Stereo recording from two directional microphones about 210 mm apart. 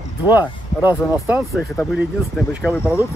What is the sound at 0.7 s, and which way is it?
Speech, 10° right (ahead or behind).